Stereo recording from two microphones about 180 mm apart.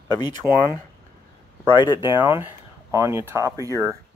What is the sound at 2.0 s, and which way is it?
Speech, 15° right (ahead or behind).